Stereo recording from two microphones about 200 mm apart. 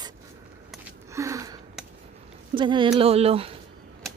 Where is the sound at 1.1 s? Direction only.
15° right (ahead or behind).